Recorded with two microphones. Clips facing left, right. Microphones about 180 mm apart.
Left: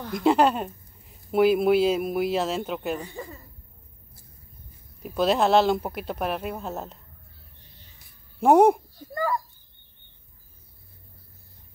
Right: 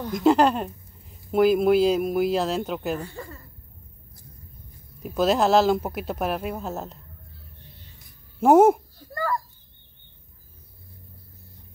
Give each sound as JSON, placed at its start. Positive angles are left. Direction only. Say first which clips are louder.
{"t": 0.0, "sound": "speech", "louder": "right 2 dB", "side_deg": 0}
{"t": 3.0, "sound": "speech", "louder": "right 1 dB", "side_deg": 15}
{"t": 5.0, "sound": "speech", "louder": "right 1 dB", "side_deg": 0}
{"t": 8.4, "sound": "speech", "louder": "right 1 dB", "side_deg": 0}
{"t": 9.1, "sound": "a sound", "louder": "left 1 dB", "side_deg": 15}